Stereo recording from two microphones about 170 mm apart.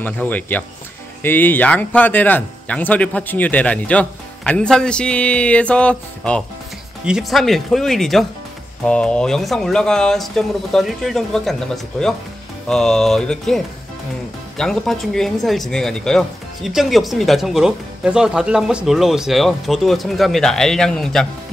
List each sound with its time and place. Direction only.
0.0 s speech: 10° left (ahead or behind)
14.6 s speech: centre (ahead or behind)